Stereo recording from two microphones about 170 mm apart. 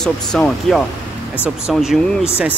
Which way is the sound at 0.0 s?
5° left (ahead or behind).